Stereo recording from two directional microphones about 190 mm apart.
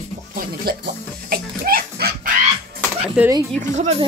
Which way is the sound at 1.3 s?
50° right (ahead or behind).